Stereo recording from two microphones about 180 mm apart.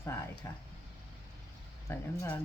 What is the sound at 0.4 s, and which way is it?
Speech, 15° left (ahead or behind).